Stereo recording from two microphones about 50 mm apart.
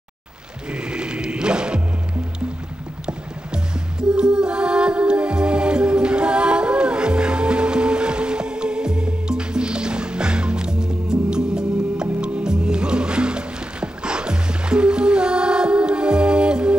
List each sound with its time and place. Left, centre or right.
0.7 s music: right
4.1 s music: centre